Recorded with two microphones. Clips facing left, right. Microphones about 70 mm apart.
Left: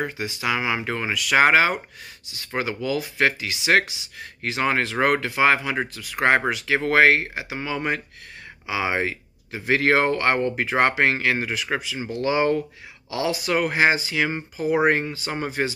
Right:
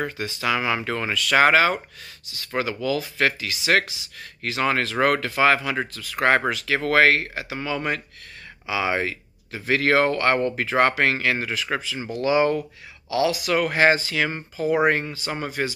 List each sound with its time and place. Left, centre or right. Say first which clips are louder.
0.0 s speech: even; centre